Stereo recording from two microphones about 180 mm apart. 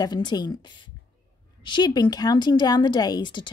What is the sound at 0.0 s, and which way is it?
A woman's voice, 25° left (ahead or behind).